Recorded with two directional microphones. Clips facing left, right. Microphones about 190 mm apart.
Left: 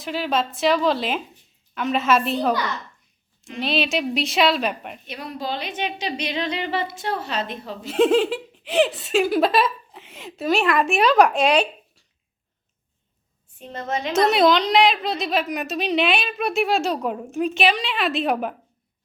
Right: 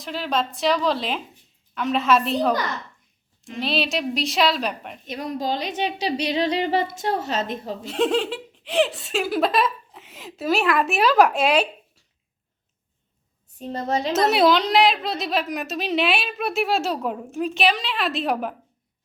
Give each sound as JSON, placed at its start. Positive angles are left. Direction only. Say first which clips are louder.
{"t": 0.0, "sound": "a woman's voice", "louder": "left 2 dB", "side_deg": 5}
{"t": 3.6, "sound": "a woman's voice", "louder": "left 1 dB", "side_deg": 0}
{"t": 5.0, "sound": "a woman's voice", "louder": "right 4 dB", "side_deg": -45}
{"t": 7.9, "sound": "a woman's voice", "louder": "left 5 dB", "side_deg": 5}
{"t": 13.6, "sound": "a woman's voice", "louder": "right 3 dB", "side_deg": -35}
{"t": 14.1, "sound": "a woman's voice", "louder": "left 1 dB", "side_deg": -5}